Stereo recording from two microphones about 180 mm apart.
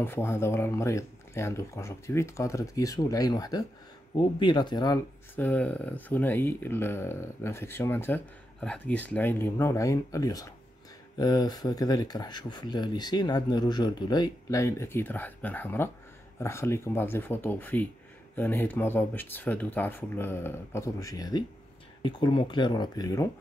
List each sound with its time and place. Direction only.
0.0 s speech: 10° left (ahead or behind)
5.3 s speech: 10° left (ahead or behind)